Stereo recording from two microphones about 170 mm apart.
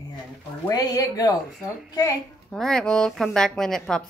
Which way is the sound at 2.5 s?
5° left (ahead or behind).